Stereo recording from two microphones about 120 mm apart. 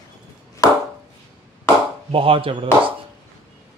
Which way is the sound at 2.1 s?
50° right (ahead or behind).